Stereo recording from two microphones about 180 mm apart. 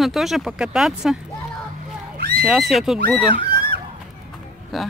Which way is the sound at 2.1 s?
60° right (ahead or behind).